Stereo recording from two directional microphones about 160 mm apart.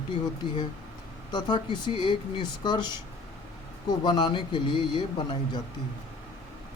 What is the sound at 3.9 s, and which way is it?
Speech, 25° left (ahead or behind).